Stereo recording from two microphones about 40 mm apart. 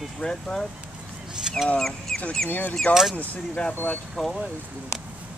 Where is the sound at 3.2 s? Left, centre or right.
Left.